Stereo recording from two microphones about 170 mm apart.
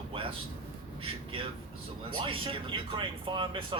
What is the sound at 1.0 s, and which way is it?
Speech, 35° right (ahead or behind).